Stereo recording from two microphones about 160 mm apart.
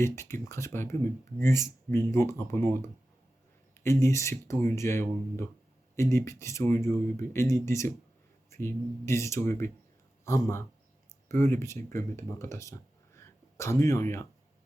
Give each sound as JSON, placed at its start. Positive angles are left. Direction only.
{"t": 0.0, "sound": "speech", "side_deg": 15}
{"t": 13.1, "sound": "sneeze", "side_deg": 15}